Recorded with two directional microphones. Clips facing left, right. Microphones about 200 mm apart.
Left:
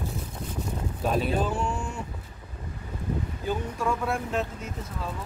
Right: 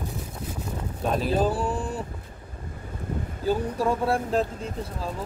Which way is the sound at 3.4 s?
35° right (ahead or behind).